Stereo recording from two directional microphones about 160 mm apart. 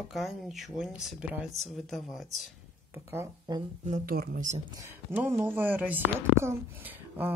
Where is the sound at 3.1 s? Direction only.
15° right (ahead or behind).